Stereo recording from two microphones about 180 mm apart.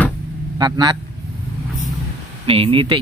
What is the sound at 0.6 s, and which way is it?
Speech, 20° right (ahead or behind).